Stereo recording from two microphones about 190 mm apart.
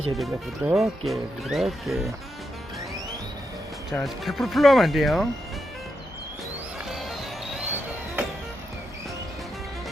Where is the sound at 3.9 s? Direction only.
Centre (ahead or behind).